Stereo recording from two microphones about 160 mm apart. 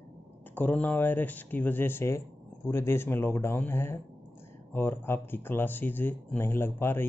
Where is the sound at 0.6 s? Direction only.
10° left (ahead or behind).